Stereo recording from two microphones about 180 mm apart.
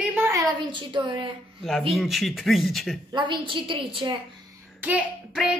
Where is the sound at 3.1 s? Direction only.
25° right (ahead or behind).